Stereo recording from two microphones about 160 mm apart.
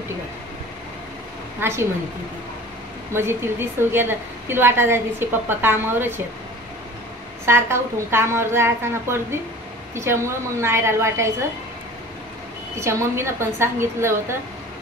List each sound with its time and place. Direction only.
1.6 s a woman's voice: 15° right (ahead or behind)
3.1 s a woman's voice: 15° right (ahead or behind)
7.4 s a woman's voice: 15° right (ahead or behind)
12.7 s a woman's voice: 15° right (ahead or behind)